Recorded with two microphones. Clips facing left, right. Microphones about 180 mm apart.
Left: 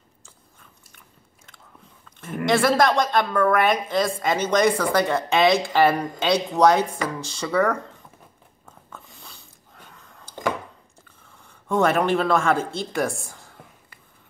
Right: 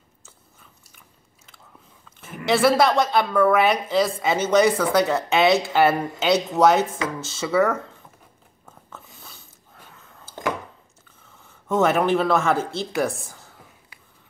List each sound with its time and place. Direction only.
0.2 s biting: 5° right (ahead or behind)
2.4 s a woman's voice: 5° right (ahead or behind)
8.6 s a sound: 5° right (ahead or behind)
11.4 s speech: 5° right (ahead or behind)